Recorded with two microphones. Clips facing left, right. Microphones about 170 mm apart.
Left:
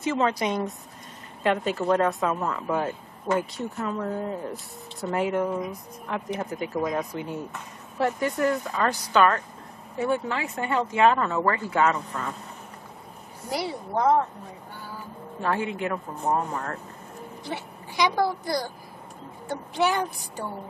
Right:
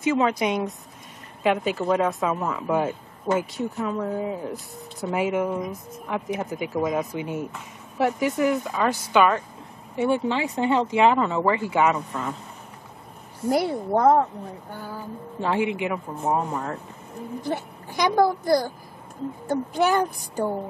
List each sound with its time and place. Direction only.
0.0 s speech: centre (ahead or behind)
10.2 s speech: 20° right (ahead or behind)
13.5 s a woman's voice: 50° right (ahead or behind)
15.8 s speech: 15° right (ahead or behind)
17.4 s a child's voice: 45° right (ahead or behind)